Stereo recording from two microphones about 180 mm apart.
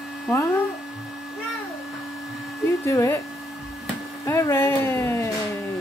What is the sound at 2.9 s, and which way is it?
Speech, 15° left (ahead or behind).